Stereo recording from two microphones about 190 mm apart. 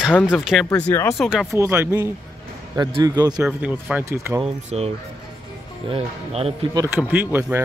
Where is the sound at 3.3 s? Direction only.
5° right (ahead or behind).